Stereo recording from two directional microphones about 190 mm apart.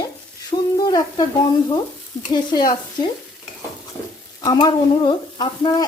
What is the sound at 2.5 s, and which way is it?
Stir, 20° left (ahead or behind).